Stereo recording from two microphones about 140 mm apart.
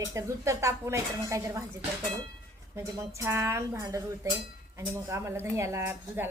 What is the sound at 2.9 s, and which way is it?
A woman's voice, 20° right (ahead or behind).